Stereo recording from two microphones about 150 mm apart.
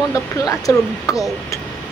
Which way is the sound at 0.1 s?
20° left (ahead or behind).